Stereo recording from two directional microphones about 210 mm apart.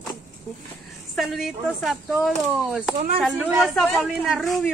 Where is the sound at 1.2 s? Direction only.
Centre (ahead or behind).